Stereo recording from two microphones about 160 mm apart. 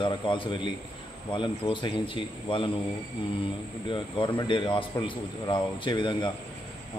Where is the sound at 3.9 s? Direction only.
30° left (ahead or behind).